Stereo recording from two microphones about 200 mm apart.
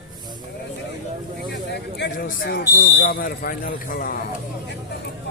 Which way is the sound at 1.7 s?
55° left (ahead or behind).